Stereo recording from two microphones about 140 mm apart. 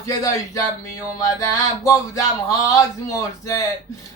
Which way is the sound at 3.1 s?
25° left (ahead or behind).